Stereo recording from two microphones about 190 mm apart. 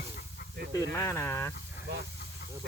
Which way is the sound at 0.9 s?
15° left (ahead or behind).